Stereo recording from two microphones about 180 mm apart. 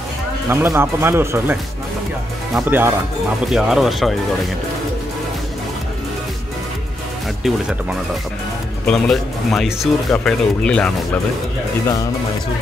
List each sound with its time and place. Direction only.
0.5 s speech: 15° right (ahead or behind)
8.8 s speech: 5° left (ahead or behind)